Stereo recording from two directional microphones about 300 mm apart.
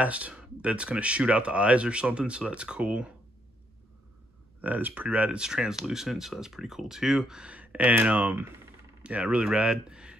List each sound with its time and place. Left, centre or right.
0.0 s speech: centre
4.6 s speech: centre